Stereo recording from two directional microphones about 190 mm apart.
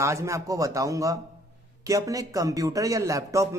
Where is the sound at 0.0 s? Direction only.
15° right (ahead or behind).